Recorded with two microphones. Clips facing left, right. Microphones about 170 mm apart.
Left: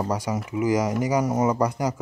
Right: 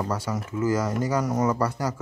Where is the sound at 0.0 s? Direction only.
15° left (ahead or behind).